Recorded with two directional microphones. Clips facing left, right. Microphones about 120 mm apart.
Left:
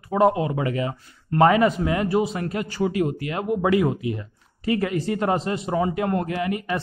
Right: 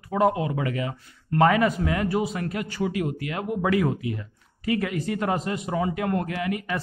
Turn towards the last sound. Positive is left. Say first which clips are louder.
# left 3 dB
turn(degrees=30)  # may be behind; listen again after turning